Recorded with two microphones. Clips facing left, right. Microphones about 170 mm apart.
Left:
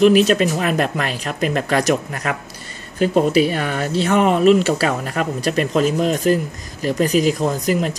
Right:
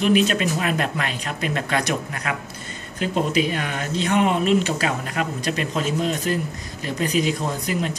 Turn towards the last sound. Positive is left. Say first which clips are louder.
# left 6 dB
turn(degrees=45)  # may be behind; listen again after turning